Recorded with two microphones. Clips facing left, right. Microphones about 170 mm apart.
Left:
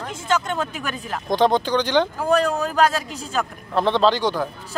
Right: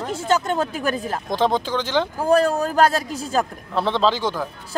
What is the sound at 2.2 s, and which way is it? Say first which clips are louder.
Speech: right 2 dB; 30° right (ahead or behind).